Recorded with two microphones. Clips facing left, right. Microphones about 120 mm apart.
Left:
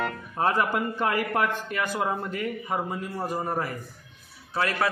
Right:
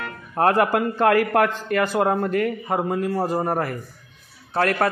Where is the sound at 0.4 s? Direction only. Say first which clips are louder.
Right 6 dB; 75° right (ahead or behind).